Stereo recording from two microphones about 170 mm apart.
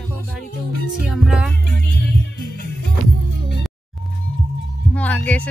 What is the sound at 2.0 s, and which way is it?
Music, 70° left (ahead or behind).